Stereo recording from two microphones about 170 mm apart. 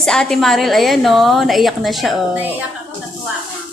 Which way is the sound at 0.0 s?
5° left (ahead or behind).